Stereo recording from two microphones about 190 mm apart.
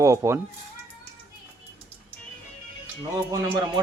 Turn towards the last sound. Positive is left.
turn(degrees=-20)  # may be behind; listen again after turning